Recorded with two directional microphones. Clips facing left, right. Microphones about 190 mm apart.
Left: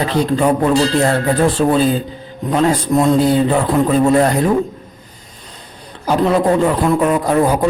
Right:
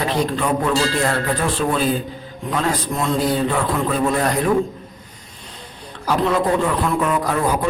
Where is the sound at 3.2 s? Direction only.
30° left (ahead or behind).